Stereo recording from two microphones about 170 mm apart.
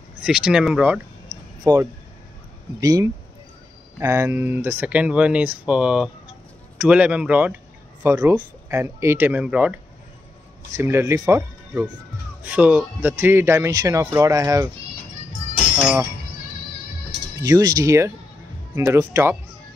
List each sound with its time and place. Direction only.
0.2 s speech: 5° right (ahead or behind)
1.6 s speech: 15° right (ahead or behind)
10.8 s speech: 15° right (ahead or behind)
12.4 s speech: 10° right (ahead or behind)
17.4 s speech: 20° right (ahead or behind)